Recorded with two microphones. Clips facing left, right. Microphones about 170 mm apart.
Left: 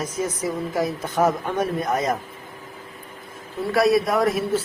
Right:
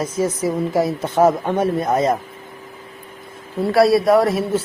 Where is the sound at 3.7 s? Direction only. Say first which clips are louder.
Right 5 dB; 30° right (ahead or behind).